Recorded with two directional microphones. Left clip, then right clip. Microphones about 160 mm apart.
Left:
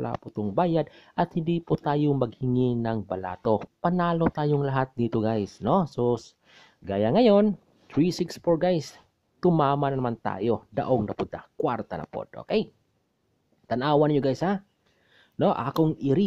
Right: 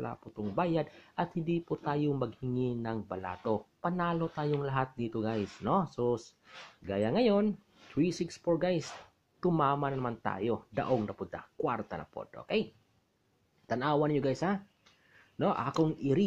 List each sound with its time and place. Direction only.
0.0 s speech: 40° left (ahead or behind)
13.7 s speech: 25° left (ahead or behind)